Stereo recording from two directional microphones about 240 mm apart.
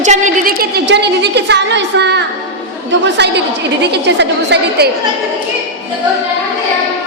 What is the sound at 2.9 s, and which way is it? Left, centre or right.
A woman's voice, right.